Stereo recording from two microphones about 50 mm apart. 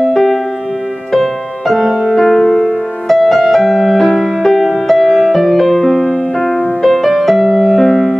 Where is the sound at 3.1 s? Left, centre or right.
Centre.